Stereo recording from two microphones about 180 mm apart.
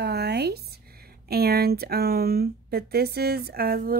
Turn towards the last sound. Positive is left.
turn(degrees=-55)  # may be behind; listen again after turning